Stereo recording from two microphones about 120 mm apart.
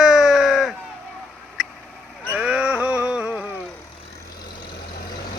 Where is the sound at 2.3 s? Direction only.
10° right (ahead or behind).